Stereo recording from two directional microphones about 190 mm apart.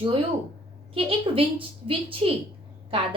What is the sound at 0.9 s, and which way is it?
A woman's voice, 30° right (ahead or behind).